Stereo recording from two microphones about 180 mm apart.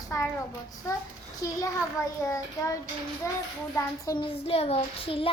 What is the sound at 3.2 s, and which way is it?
Speech, 15° left (ahead or behind).